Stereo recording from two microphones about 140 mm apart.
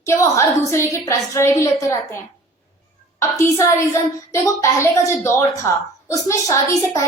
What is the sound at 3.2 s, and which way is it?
A woman's voice, 20° left (ahead or behind).